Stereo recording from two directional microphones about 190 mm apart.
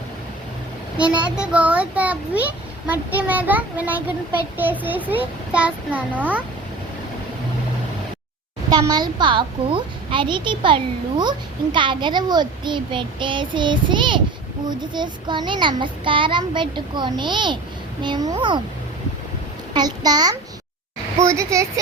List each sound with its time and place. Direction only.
0.9 s a child's voice: 5° right (ahead or behind)
8.7 s a child's voice: 20° right (ahead or behind)
19.7 s a child's voice: 20° right (ahead or behind)